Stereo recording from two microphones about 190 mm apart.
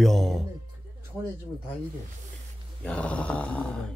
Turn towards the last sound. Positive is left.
turn(degrees=5)  # may be behind; listen again after turning